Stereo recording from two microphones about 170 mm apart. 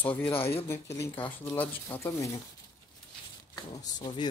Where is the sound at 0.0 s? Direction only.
10° left (ahead or behind).